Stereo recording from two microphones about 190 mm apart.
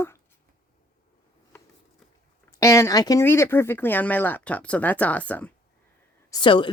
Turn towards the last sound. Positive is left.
turn(degrees=25)  # may be behind; listen again after turning